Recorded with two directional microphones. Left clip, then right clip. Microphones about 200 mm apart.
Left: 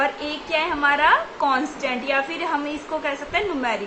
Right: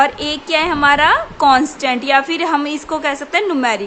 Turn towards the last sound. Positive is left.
turn(degrees=-55)  # may be behind; listen again after turning